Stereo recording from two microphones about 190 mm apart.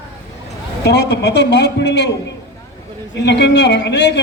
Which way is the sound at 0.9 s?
60° left (ahead or behind).